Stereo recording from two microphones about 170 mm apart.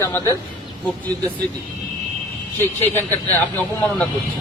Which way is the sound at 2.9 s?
10° left (ahead or behind).